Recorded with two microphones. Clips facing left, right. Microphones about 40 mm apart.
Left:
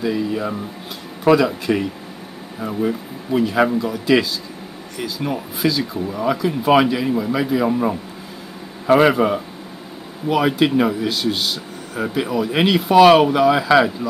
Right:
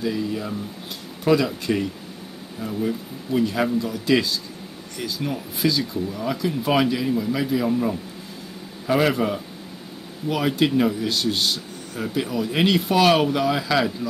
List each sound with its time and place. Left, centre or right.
0.0 s speech: centre
2.6 s speech: left
7.6 s speech: left